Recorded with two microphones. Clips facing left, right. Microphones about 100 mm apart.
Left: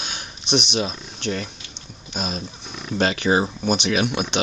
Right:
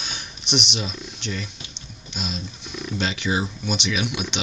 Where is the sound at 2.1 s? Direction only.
45° left (ahead or behind).